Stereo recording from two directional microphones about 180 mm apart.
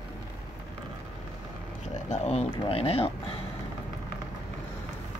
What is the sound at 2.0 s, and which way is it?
Speech, 35° left (ahead or behind).